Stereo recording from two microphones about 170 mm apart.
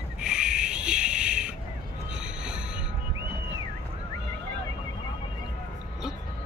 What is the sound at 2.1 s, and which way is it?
Train, 5° right (ahead or behind).